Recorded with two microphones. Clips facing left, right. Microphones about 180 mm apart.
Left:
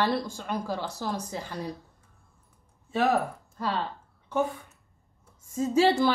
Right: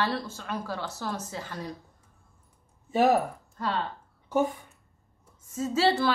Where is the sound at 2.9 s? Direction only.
20° right (ahead or behind).